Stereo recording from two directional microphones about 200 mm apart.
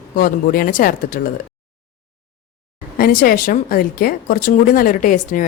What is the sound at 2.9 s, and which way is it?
Speech, 45° left (ahead or behind).